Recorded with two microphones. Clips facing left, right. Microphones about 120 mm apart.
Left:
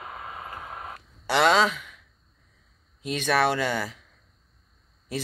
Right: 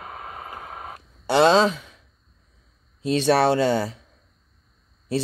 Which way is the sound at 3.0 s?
30° right (ahead or behind).